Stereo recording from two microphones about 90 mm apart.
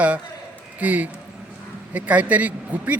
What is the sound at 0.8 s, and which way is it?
A man's voice, 15° right (ahead or behind).